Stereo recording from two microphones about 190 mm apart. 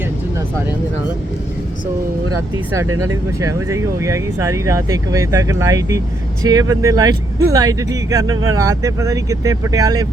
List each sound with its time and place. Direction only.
3.1 s speech: 15° right (ahead or behind)